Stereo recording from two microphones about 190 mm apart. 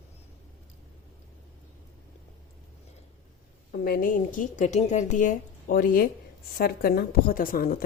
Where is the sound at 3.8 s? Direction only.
50° left (ahead or behind).